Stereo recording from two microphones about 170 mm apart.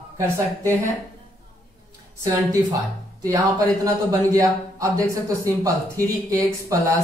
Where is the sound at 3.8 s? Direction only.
20° right (ahead or behind).